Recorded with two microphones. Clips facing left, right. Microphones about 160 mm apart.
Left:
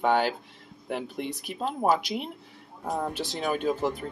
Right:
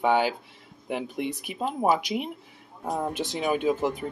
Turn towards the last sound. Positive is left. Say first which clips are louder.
# right 2 dB
turn(degrees=-10)  # may be behind; listen again after turning